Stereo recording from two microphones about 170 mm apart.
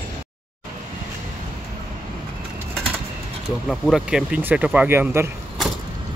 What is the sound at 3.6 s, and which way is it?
Speech, centre (ahead or behind).